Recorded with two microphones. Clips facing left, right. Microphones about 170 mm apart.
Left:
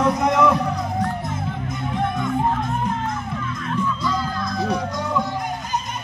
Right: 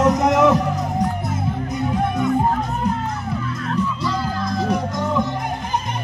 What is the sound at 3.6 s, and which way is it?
Music, 5° right (ahead or behind).